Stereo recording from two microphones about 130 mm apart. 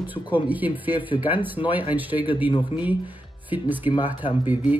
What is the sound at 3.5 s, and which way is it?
Speech, 15° right (ahead or behind).